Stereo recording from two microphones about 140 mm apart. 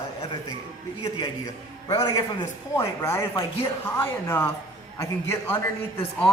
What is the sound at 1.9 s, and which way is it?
Speech, 25° left (ahead or behind).